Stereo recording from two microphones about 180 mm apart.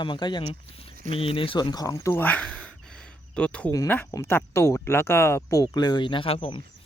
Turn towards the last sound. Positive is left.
turn(degrees=30)  # may be behind; listen again after turning